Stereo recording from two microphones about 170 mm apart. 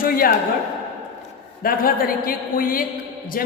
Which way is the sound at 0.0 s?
55° left (ahead or behind).